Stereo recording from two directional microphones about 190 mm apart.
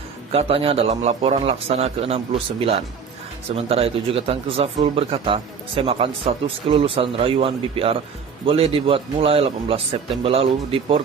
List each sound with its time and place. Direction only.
0.3 s a man's voice: 30° right (ahead or behind)